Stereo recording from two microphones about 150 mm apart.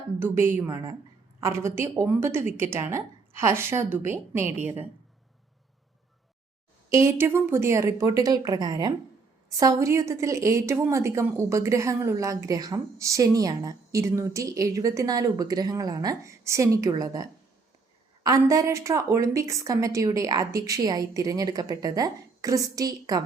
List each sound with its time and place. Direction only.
0.2 s a woman's voice: 15° right (ahead or behind)
6.9 s a woman's voice: 20° right (ahead or behind)